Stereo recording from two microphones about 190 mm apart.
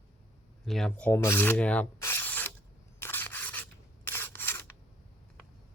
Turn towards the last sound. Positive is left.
turn(degrees=10)  # may be behind; listen again after turning